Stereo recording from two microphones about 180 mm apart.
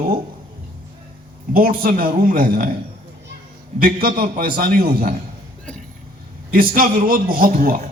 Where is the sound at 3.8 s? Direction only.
55° right (ahead or behind).